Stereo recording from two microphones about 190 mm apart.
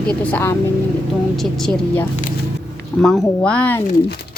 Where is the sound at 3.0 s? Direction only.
5° left (ahead or behind).